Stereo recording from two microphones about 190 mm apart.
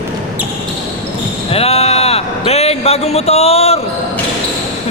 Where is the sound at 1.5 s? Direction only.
30° left (ahead or behind).